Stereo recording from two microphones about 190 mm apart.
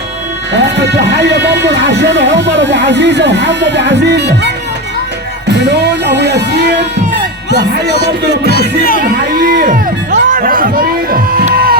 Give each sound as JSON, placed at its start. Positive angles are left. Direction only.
{"t": 0.5, "sound": "speech", "side_deg": -65}
{"t": 5.5, "sound": "speech", "side_deg": -65}
{"t": 7.5, "sound": "speech", "side_deg": 60}
{"t": 9.0, "sound": "music", "side_deg": -50}